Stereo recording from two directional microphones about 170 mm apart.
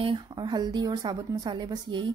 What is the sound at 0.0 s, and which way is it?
A woman's voice, 25° right (ahead or behind).